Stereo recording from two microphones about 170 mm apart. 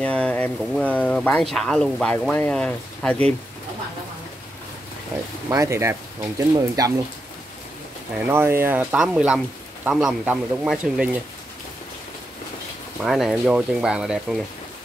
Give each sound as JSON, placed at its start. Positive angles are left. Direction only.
{"t": 0.0, "sound": "speech", "side_deg": 5}
{"t": 5.1, "sound": "speech", "side_deg": -10}
{"t": 8.3, "sound": "speech", "side_deg": -15}
{"t": 13.0, "sound": "speech", "side_deg": 0}